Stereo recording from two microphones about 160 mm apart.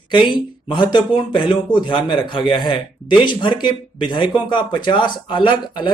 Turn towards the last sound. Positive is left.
turn(degrees=30)  # may be behind; listen again after turning